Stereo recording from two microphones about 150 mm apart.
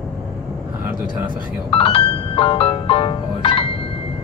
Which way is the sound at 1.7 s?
40° left (ahead or behind).